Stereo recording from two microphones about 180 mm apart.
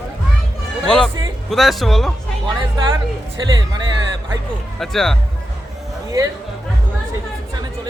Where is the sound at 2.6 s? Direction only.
25° right (ahead or behind).